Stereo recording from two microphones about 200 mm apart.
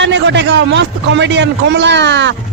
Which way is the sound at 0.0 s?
65° right (ahead or behind).